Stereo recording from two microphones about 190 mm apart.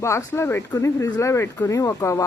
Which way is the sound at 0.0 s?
15° left (ahead or behind).